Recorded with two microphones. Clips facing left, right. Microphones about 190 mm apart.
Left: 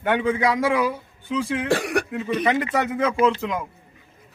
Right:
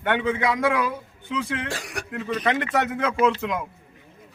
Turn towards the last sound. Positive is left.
turn(degrees=0)  # may be behind; listen again after turning